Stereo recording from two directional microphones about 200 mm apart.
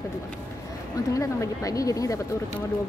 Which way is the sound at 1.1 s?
15° left (ahead or behind).